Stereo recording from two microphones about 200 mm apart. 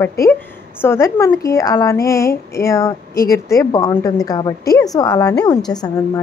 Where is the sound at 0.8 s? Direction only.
15° left (ahead or behind).